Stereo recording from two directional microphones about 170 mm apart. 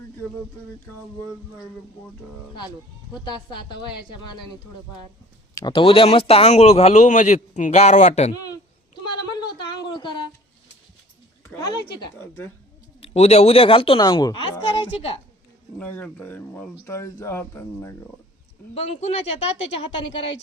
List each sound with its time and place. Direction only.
3.5 s a woman's voice: 25° left (ahead or behind)
5.5 s a man's voice: 25° left (ahead or behind); by 8.3 s 45° left (ahead or behind)
8.3 s speech: 25° left (ahead or behind)
9.0 s a sound: 25° left (ahead or behind)
11.4 s a woman's voice: 20° left (ahead or behind)
13.0 s a man's voice: 40° left (ahead or behind)
15.8 s speech: 10° left (ahead or behind)
18.7 s a man's voice: 40° left (ahead or behind)